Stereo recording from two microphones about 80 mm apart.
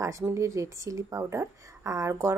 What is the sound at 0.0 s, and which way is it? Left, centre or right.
Speech, right.